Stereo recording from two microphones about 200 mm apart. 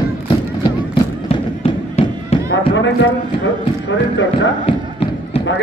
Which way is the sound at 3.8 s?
65° left (ahead or behind).